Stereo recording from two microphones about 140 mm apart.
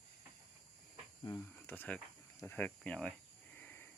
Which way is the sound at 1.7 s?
15° left (ahead or behind).